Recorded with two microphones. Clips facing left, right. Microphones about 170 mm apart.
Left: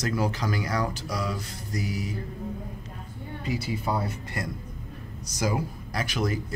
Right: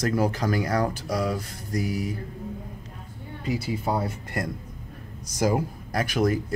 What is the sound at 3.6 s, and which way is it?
Speech, 45° right (ahead or behind).